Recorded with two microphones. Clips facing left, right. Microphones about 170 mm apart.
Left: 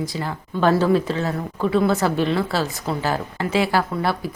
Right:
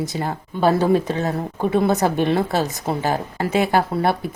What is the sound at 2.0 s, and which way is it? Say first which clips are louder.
Speech: right 2 dB; 50° right (ahead or behind).